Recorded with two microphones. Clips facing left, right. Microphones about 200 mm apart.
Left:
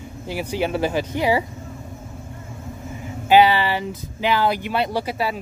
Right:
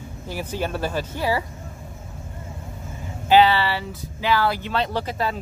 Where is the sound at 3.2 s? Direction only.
15° left (ahead or behind).